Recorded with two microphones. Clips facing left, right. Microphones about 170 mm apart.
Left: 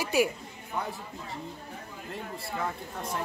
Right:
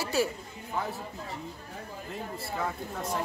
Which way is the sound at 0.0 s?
15° left (ahead or behind).